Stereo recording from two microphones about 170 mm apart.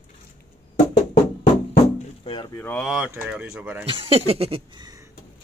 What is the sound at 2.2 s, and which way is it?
Speech, 25° left (ahead or behind).